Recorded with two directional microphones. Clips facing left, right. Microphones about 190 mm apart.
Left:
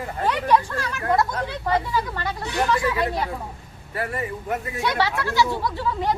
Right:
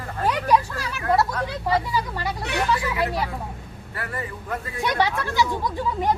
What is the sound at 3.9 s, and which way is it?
Speech, 25° left (ahead or behind).